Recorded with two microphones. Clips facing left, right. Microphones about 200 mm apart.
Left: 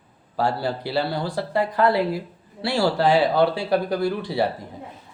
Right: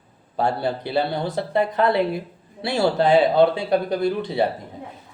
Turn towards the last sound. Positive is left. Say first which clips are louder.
# right 1 dB
turn(degrees=-20)  # may be behind; listen again after turning